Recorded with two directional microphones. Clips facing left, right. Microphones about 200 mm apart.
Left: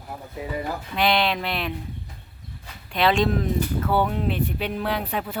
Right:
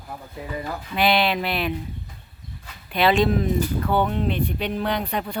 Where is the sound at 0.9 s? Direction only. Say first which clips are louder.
Right 2 dB; 5° right (ahead or behind).